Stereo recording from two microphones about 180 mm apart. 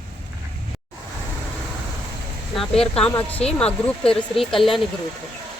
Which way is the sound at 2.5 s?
Centre (ahead or behind).